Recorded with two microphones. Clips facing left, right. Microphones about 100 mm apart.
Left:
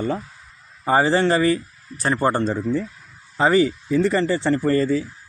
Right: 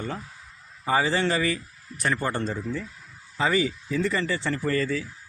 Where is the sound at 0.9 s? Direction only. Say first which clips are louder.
Left 6 dB; 35° left (ahead or behind).